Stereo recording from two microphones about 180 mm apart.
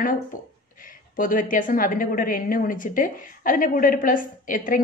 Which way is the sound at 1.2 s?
50° left (ahead or behind).